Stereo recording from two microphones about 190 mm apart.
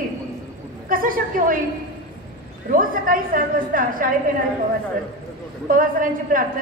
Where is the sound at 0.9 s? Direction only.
45° right (ahead or behind).